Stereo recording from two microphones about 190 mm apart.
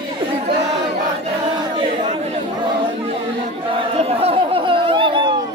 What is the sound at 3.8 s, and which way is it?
Chatter, 30° right (ahead or behind).